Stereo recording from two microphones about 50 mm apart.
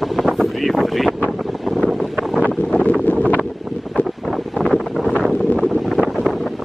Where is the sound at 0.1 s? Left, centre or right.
Centre.